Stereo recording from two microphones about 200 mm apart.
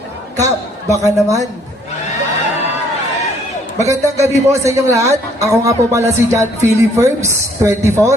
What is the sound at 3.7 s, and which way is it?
A man's voice, 15° right (ahead or behind).